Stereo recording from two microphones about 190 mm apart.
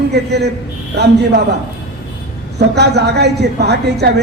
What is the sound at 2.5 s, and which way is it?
A man's voice, 60° right (ahead or behind).